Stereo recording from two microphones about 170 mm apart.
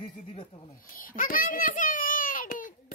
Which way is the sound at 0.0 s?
30° left (ahead or behind).